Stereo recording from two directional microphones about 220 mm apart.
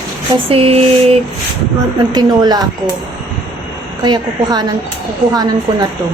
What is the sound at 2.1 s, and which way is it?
Speech, 20° right (ahead or behind).